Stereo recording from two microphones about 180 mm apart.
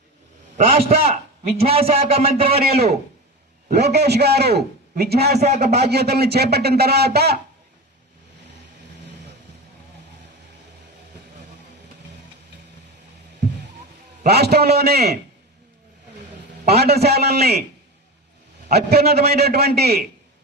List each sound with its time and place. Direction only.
0.5 s a man's voice: 35° right (ahead or behind)
2.6 s speech: 60° right (ahead or behind)
5.4 s a man's voice: 40° right (ahead or behind)
5.7 s speech: 65° right (ahead or behind)
14.3 s speech: 65° right (ahead or behind)
16.6 s speech: 60° right (ahead or behind)
18.7 s speech: 60° right (ahead or behind)